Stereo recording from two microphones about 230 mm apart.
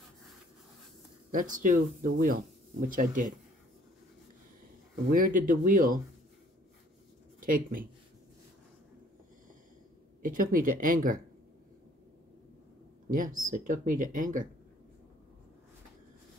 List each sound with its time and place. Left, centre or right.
1.3 s speech: right
5.1 s speech: right
7.3 s speech: right
10.2 s speech: right
13.1 s speech: right